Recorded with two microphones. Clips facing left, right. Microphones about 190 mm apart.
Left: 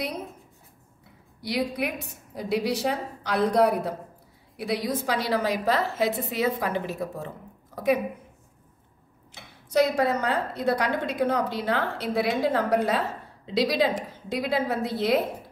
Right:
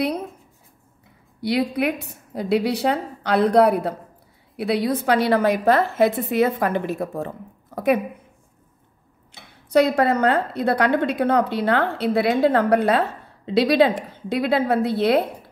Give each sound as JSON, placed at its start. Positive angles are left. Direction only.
{"t": 1.4, "sound": "a woman's voice", "side_deg": -65}
{"t": 9.7, "sound": "a woman's voice", "side_deg": -65}